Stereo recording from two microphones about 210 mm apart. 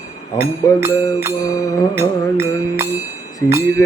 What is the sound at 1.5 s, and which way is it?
Music, 15° left (ahead or behind).